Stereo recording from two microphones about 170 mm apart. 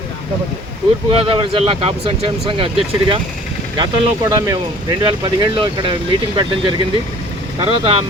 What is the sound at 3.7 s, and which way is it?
Speech, 25° right (ahead or behind).